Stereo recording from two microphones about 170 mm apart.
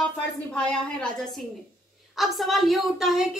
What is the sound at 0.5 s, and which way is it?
A woman's voice, 5° left (ahead or behind).